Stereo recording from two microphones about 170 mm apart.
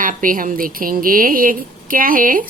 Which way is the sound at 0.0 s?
50° right (ahead or behind).